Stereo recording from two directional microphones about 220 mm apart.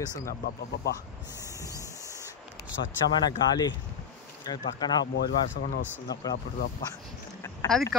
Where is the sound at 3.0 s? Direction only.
50° left (ahead or behind).